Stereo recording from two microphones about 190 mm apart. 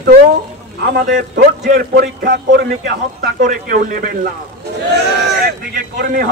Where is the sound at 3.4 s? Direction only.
45° right (ahead or behind).